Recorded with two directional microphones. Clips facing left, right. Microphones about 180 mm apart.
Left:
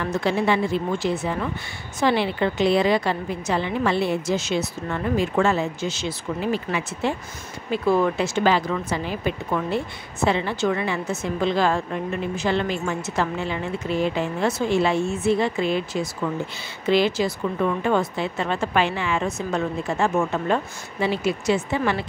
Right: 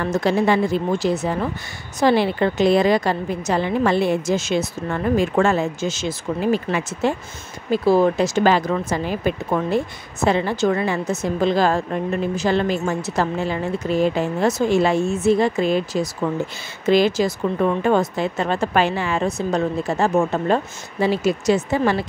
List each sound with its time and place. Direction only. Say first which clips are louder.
0.0 s a woman's voice: right 4 dB; 40° right (ahead or behind)
7.7 s a woman's voice: right 4 dB; 35° right (ahead or behind)